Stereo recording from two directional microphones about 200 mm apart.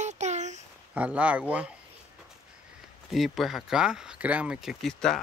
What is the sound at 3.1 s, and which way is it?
Speech, centre (ahead or behind).